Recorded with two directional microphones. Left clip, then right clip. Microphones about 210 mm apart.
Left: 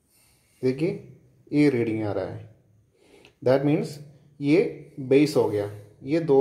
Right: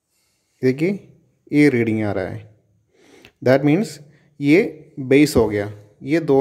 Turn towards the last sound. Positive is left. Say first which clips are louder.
# right 5 dB
turn(degrees=-35)  # may be behind; listen again after turning